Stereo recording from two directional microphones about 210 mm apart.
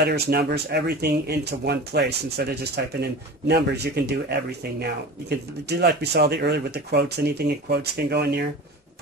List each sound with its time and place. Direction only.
0.0 s speech: 50° right (ahead or behind)